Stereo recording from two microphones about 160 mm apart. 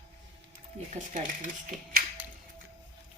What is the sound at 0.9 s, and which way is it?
Speech, 50° right (ahead or behind).